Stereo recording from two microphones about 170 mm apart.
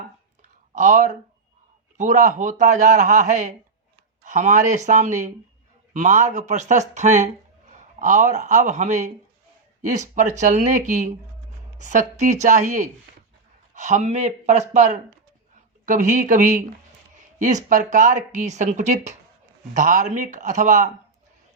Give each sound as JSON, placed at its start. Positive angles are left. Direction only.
{"t": 0.7, "sound": "speech", "side_deg": -45}